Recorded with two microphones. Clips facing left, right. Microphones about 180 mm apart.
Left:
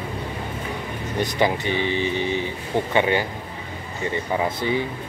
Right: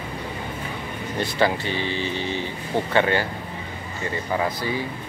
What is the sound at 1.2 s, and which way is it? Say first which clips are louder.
Speech: left 1 dB; 15° left (ahead or behind).